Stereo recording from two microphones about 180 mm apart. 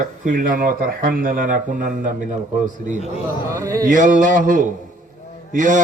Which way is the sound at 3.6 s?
15° right (ahead or behind).